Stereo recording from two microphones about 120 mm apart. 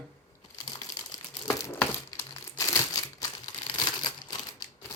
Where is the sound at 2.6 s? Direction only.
30° left (ahead or behind).